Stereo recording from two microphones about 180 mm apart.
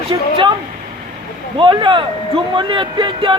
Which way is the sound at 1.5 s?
25° right (ahead or behind).